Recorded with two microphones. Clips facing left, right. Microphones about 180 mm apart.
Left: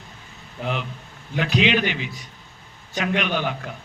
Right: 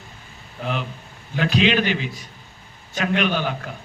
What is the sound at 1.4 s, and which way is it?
A man's voice, 15° left (ahead or behind).